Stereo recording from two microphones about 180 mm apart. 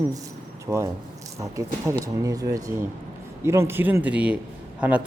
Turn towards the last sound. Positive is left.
turn(degrees=-5)  # may be behind; listen again after turning